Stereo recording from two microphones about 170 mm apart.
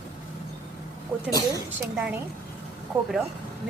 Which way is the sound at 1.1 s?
10° right (ahead or behind).